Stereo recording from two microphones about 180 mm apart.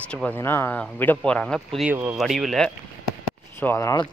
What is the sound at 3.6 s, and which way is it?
Speech, 15° left (ahead or behind).